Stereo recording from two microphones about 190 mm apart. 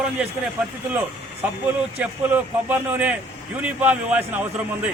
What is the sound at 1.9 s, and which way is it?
A man's voice, 10° right (ahead or behind).